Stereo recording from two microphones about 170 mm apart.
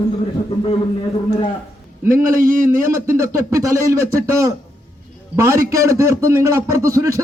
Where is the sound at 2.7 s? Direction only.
15° right (ahead or behind).